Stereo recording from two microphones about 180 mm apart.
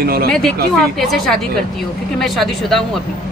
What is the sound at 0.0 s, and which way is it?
Speech, 60° right (ahead or behind).